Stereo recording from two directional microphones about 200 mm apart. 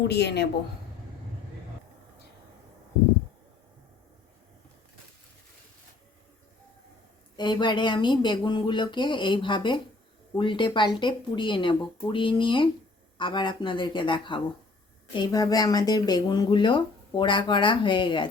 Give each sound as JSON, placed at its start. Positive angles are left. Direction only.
{"t": 0.1, "sound": "a woman's voice", "side_deg": 55}
{"t": 7.3, "sound": "speech", "side_deg": 20}